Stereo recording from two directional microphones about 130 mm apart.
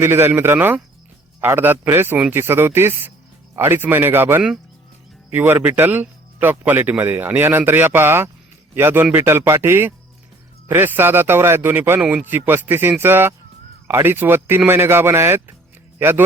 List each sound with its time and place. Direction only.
0.0 s speech: 20° right (ahead or behind)